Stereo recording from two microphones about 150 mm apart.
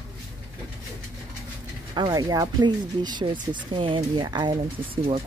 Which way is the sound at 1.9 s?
25° right (ahead or behind).